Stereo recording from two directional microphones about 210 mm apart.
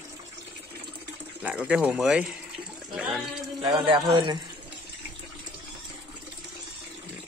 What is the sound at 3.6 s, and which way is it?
Speech, 25° right (ahead or behind).